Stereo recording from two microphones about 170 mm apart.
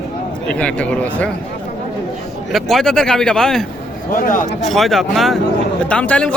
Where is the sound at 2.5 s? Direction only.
Centre (ahead or behind).